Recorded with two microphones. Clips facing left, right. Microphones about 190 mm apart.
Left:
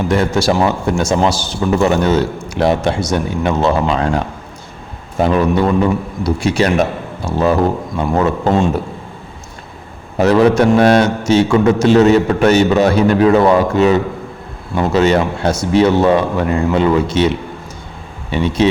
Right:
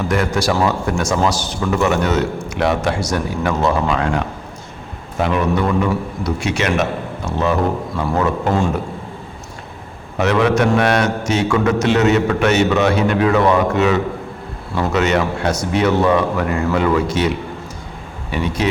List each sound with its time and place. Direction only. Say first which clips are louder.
0.1 s a man's voice: left 4 dB; 25° left (ahead or behind)
5.2 s a man's voice: left 4 dB; 30° left (ahead or behind)
7.9 s a man's voice: left 3 dB; 20° left (ahead or behind)
10.2 s a man's voice: left 5 dB; 35° left (ahead or behind)